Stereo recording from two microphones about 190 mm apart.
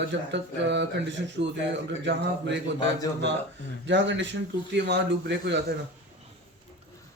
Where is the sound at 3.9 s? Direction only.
70° right (ahead or behind).